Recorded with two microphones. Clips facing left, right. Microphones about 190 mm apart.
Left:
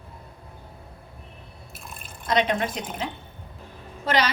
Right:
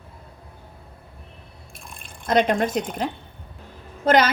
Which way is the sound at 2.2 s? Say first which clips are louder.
Right 4 dB; 45° right (ahead or behind).